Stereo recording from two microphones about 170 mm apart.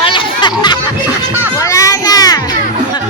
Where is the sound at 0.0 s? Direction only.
30° left (ahead or behind).